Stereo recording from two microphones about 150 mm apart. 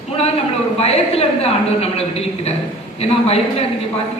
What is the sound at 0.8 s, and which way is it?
A woman's voice, 40° left (ahead or behind).